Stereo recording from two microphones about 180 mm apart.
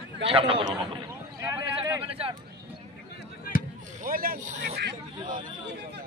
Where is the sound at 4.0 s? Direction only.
55° right (ahead or behind).